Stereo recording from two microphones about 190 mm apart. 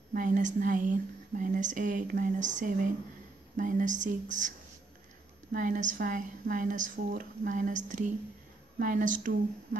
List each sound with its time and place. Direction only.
0.1 s speech: 40° right (ahead or behind)
5.5 s speech: 45° right (ahead or behind)